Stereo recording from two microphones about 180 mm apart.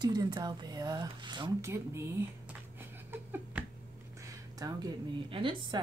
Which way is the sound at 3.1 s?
10° right (ahead or behind).